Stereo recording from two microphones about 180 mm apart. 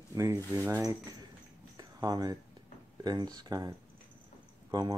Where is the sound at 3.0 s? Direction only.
20° right (ahead or behind).